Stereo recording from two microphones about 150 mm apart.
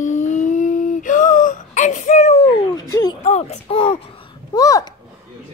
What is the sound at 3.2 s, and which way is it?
Speech, 45° left (ahead or behind).